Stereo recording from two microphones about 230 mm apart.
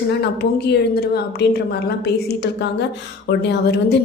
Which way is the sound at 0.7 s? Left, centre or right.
Left.